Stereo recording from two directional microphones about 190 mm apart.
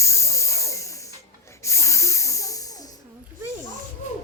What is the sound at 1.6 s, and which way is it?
Spray, 15° left (ahead or behind).